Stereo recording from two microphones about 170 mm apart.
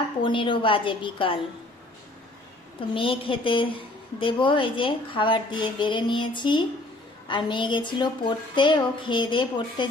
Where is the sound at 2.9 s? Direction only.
30° left (ahead or behind).